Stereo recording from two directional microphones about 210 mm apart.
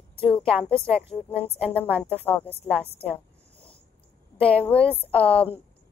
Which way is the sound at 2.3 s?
10° left (ahead or behind).